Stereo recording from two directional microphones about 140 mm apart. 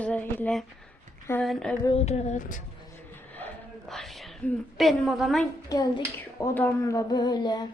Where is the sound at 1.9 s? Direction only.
50° left (ahead or behind); by 2.6 s 70° left (ahead or behind).